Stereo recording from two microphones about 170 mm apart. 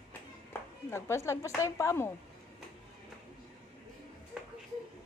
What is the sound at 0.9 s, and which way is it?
A woman's voice, 15° left (ahead or behind).